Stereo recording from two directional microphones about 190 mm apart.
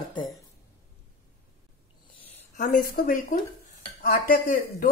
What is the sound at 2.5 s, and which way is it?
Speech, 45° left (ahead or behind).